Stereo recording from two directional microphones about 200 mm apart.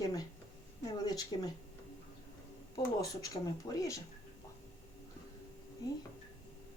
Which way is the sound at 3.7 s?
15° left (ahead or behind).